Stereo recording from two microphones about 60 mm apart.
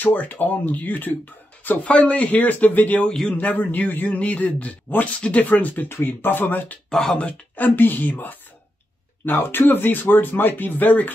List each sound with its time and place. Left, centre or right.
0.0 s a man's voice: left
3.1 s a man's voice: centre
3.3 s a man's voice: left
5.9 s speech: left
6.9 s speech: centre
7.6 s speech: left